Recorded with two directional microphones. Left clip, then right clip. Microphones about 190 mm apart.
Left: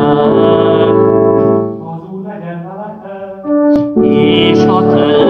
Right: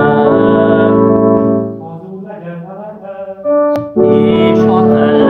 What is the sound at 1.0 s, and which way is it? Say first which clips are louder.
Music: left 1 dB; 45° left (ahead or behind).